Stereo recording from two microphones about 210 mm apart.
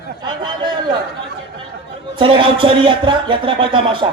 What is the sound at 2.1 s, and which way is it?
Speech, 25° right (ahead or behind).